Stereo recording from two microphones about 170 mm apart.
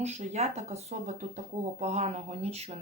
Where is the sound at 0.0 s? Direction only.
40° right (ahead or behind).